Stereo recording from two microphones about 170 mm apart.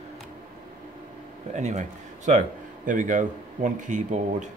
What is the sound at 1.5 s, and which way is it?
A man's voice, 45° right (ahead or behind).